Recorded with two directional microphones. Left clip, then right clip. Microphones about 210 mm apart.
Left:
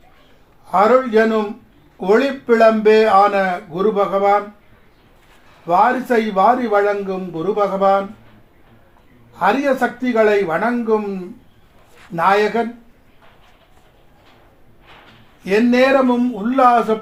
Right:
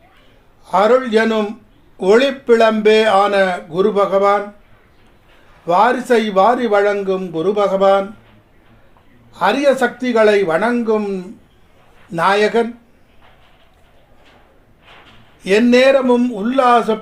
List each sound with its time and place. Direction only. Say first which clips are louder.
0.6 s speech: even; 40° right (ahead or behind)
5.6 s speech: right 1 dB; 40° right (ahead or behind)
9.3 s speech: right 2 dB; 40° right (ahead or behind)
15.4 s speech: right 3 dB; 40° right (ahead or behind)